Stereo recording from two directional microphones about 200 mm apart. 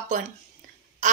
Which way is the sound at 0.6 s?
40° right (ahead or behind).